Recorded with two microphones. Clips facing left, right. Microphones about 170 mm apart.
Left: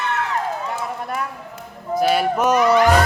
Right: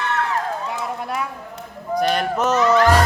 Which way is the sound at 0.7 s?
Centre (ahead or behind).